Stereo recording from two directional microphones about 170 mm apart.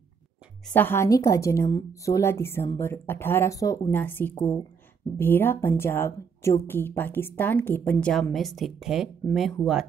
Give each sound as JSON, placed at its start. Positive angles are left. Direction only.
{"t": 0.7, "sound": "a woman's voice", "side_deg": 15}